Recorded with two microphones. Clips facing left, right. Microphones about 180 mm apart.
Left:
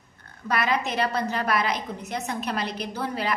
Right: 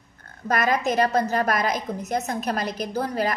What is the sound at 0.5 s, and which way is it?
A woman's voice, 45° right (ahead or behind).